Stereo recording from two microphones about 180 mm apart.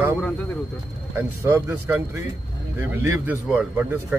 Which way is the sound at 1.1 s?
15° right (ahead or behind).